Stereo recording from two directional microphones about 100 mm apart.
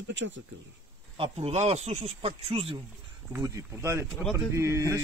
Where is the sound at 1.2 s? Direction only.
90° right; by 2.8 s 70° right (ahead or behind).